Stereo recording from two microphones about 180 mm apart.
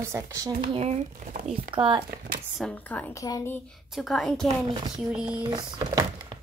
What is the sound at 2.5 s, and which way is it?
A woman's voice, 5° left (ahead or behind).